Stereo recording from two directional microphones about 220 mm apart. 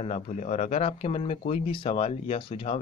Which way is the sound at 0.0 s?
30° left (ahead or behind).